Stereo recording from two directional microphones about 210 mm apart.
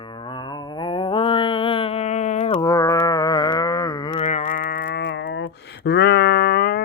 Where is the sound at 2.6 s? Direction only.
15° left (ahead or behind).